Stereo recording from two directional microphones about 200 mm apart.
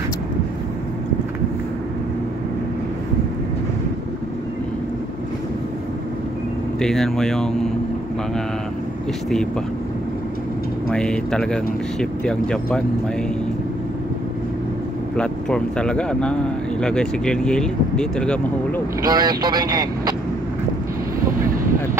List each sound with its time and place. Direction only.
6.8 s speech: 5° left (ahead or behind)
10.9 s speech: 5° left (ahead or behind)
15.1 s speech: 5° left (ahead or behind)
19.0 s speech: 20° right (ahead or behind)